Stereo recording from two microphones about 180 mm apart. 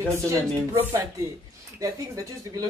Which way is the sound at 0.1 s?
15° right (ahead or behind).